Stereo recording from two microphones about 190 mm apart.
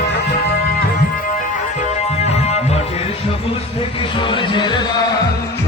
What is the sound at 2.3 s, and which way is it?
Music, 35° left (ahead or behind).